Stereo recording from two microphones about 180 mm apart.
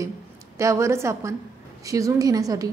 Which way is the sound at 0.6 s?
15° right (ahead or behind).